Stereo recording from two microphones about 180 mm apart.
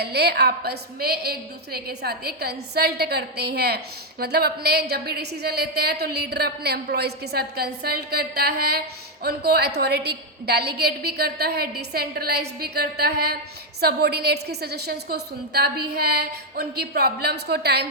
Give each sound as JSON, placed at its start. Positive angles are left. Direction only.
{"t": 0.0, "sound": "a woman's voice", "side_deg": -65}